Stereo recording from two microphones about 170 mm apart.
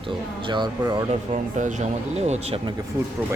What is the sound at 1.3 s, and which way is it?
Speech, 45° right (ahead or behind).